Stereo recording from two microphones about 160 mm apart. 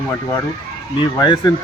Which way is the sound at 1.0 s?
25° left (ahead or behind).